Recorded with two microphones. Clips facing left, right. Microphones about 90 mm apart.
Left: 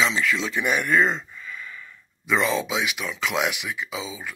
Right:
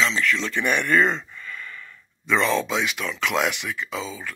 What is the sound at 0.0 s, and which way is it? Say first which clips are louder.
Speech: even; 10° left (ahead or behind).